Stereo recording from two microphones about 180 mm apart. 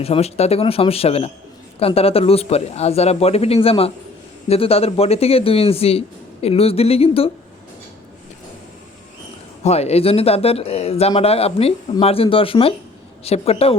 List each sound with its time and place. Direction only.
0.0 s speech: 35° left (ahead or behind)
9.6 s speech: 35° left (ahead or behind)